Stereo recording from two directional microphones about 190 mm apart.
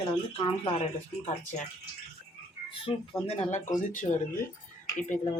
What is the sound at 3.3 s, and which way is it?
Speech, 35° left (ahead or behind).